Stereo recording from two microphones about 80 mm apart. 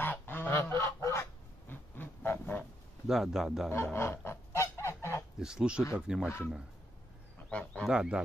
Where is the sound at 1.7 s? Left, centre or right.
Left.